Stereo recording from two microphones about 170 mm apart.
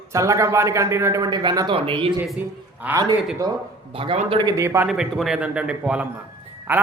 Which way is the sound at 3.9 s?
30° right (ahead or behind).